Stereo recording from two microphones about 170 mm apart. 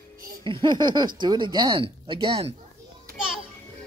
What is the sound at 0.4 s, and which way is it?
Speech, 30° right (ahead or behind).